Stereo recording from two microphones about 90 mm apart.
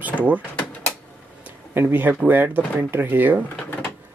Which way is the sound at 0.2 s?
15° right (ahead or behind).